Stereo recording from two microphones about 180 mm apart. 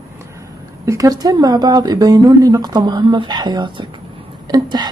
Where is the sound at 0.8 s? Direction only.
20° right (ahead or behind).